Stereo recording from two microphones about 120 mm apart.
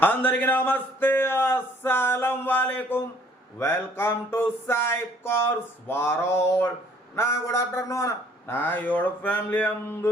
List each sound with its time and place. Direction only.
0.0 s a man's voice: 15° left (ahead or behind)
3.6 s a sound: 20° left (ahead or behind)
7.2 s a man's voice: 25° left (ahead or behind)